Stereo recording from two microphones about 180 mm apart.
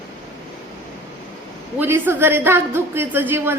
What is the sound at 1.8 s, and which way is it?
A woman's voice, 10° right (ahead or behind).